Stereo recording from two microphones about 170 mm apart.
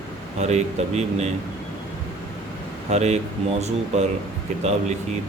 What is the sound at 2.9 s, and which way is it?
Speech, 40° right (ahead or behind).